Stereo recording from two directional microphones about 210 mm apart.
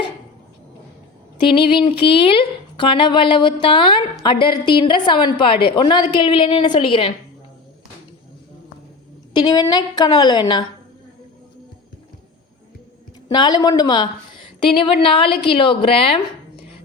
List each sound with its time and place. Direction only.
1.5 s a woman's voice: 25° left (ahead or behind)
9.4 s a woman's voice: 20° left (ahead or behind)
13.2 s a woman's voice: 20° left (ahead or behind)